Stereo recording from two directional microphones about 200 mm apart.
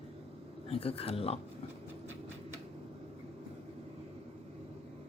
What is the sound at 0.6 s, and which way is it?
Speech, 30° left (ahead or behind).